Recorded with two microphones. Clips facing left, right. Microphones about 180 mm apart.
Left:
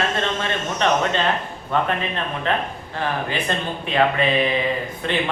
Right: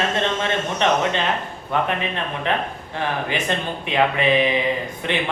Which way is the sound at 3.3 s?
15° right (ahead or behind).